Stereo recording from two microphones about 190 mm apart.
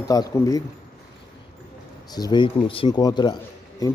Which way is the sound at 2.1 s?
20° left (ahead or behind).